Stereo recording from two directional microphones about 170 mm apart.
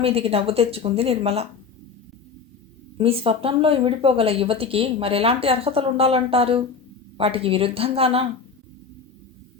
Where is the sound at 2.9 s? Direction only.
35° right (ahead or behind).